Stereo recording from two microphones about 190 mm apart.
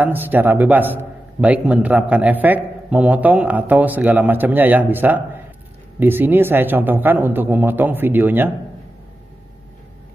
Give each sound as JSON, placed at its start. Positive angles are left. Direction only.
{"t": 0.0, "sound": "a man's voice", "side_deg": -10}